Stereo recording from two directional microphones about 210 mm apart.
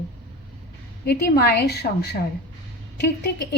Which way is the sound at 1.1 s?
50° left (ahead or behind).